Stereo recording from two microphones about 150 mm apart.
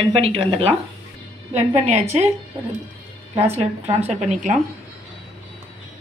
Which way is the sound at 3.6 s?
45° right (ahead or behind).